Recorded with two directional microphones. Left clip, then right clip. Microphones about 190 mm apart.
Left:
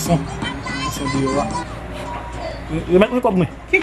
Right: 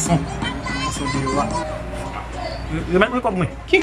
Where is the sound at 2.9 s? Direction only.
20° left (ahead or behind).